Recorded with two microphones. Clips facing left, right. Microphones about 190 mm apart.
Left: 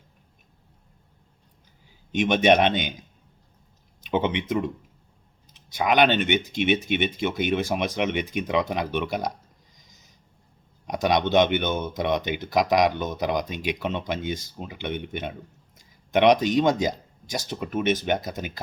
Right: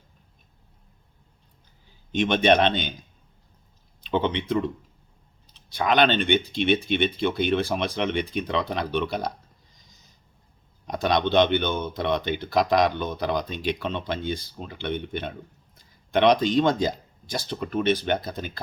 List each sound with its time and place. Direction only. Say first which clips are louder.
2.1 s speech: left 1 dB; 15° left (ahead or behind)
4.1 s speech: even; 20° left (ahead or behind)
5.7 s speech: left 1 dB; 15° left (ahead or behind)
10.8 s speech: left 1 dB; 20° left (ahead or behind)